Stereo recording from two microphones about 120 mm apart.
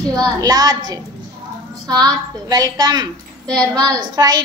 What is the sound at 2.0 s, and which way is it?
A child's voice, 30° right (ahead or behind).